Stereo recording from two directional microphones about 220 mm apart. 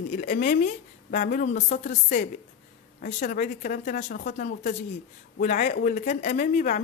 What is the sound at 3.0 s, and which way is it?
Speech, 35° left (ahead or behind).